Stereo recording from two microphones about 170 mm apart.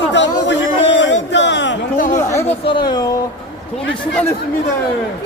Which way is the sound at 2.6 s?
25° left (ahead or behind).